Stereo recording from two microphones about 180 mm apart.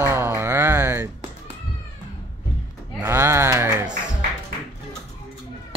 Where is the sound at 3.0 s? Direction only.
15° right (ahead or behind).